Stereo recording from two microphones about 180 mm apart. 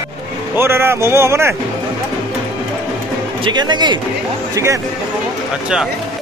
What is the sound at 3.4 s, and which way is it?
Speech, 25° right (ahead or behind).